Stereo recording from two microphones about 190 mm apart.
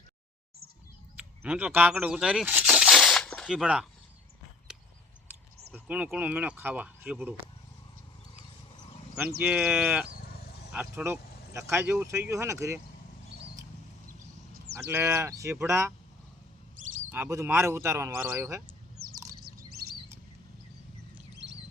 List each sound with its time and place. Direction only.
1.1 s a sound: 10° right (ahead or behind)
5.9 s speech: 5° right (ahead or behind)
9.4 s speech: 5° right (ahead or behind)
10.1 s sheep: 50° left (ahead or behind)
10.7 s speech: 10° right (ahead or behind)
14.8 s speech: 10° right (ahead or behind)
17.1 s speech: 15° right (ahead or behind)